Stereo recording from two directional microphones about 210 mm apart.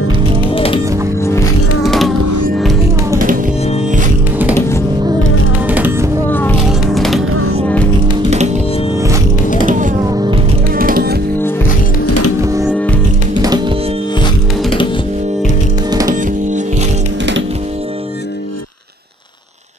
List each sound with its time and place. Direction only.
1.8 s music: centre (ahead or behind)
4.6 s music: 15° left (ahead or behind)
5.7 s music: 10° right (ahead or behind)
6.3 s music: 5° left (ahead or behind)
9.7 s music: 40° right (ahead or behind)
10.0 s music: 20° right (ahead or behind)
10.8 s music: 45° right (ahead or behind)
12.4 s music: 15° right (ahead or behind)
12.6 s music: 5° left (ahead or behind)
13.4 s music: 20° right (ahead or behind)
16.1 s music: 35° right (ahead or behind)